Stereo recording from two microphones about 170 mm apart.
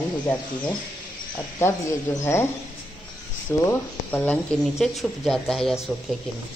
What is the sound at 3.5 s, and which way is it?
Speech, 10° left (ahead or behind).